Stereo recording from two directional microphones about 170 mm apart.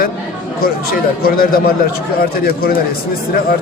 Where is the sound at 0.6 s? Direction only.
60° left (ahead or behind).